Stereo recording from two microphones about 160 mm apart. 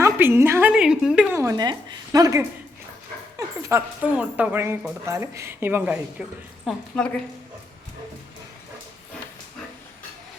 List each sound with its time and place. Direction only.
0.0 s a woman's voice: 15° right (ahead or behind)
1.3 s a woman's voice: 20° right (ahead or behind)
6.7 s a woman's voice: 5° left (ahead or behind)